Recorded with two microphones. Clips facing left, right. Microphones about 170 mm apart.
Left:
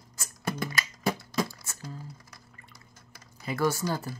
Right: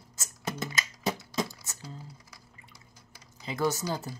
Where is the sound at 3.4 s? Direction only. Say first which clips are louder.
Left 2 dB; 20° right (ahead or behind).